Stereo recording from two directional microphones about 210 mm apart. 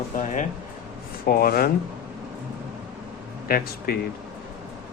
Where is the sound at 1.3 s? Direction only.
45° left (ahead or behind).